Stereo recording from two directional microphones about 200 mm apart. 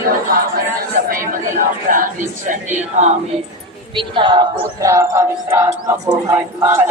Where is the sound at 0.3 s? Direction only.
45° right (ahead or behind).